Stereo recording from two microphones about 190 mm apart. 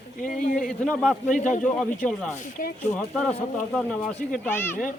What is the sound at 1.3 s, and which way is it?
A man's voice, 40° left (ahead or behind).